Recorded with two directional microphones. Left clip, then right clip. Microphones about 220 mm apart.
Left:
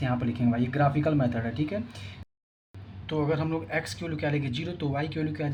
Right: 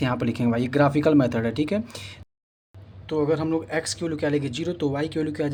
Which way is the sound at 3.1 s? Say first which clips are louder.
Right 5 dB; 25° right (ahead or behind).